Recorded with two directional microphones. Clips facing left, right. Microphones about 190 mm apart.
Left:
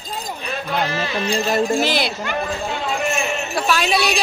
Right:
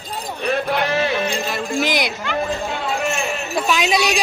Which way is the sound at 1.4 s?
45° left (ahead or behind).